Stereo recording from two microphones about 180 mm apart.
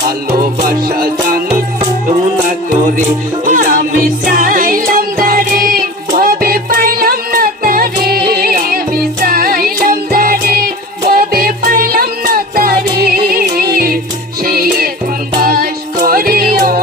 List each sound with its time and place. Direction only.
0.6 s music: 55° right (ahead or behind)
3.4 s music: 50° right (ahead or behind)